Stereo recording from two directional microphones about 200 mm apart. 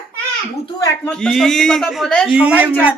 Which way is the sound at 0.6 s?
15° left (ahead or behind).